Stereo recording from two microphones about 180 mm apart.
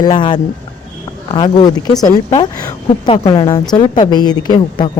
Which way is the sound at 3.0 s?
30° left (ahead or behind).